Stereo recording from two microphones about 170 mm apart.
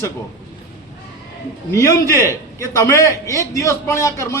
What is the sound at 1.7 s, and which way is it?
A man's voice, 15° left (ahead or behind).